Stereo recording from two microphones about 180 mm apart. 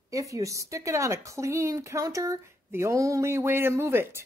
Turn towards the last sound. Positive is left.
turn(degrees=-15)  # may be behind; listen again after turning